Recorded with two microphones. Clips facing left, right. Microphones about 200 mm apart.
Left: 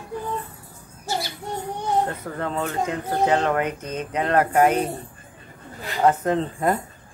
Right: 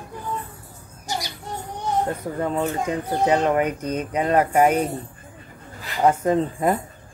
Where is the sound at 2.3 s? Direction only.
10° right (ahead or behind).